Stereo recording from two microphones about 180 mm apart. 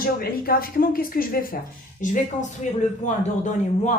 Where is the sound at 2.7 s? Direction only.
45° left (ahead or behind).